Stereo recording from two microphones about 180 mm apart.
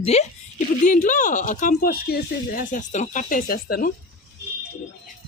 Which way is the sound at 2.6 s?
45° left (ahead or behind).